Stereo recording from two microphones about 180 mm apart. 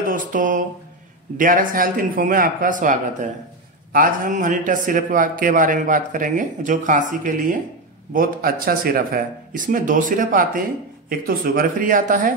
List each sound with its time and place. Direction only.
0.0 s a man's voice: 50° right (ahead or behind)